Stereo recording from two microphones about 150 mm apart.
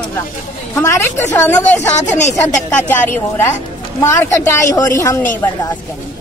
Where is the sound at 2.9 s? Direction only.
15° left (ahead or behind).